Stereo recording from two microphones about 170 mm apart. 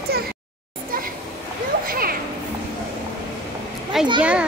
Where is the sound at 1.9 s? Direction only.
60° right (ahead or behind).